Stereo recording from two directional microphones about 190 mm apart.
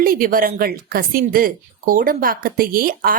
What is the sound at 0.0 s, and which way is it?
Speech, 50° right (ahead or behind).